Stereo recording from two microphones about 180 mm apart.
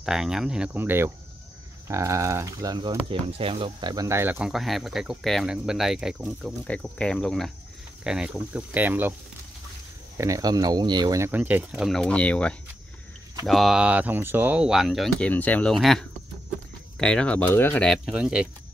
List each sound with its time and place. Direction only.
0.0 s speech: 5° right (ahead or behind)
6.7 s speech: 5° left (ahead or behind); by 9.1 s 10° right (ahead or behind)
10.1 s speech: 20° right (ahead or behind)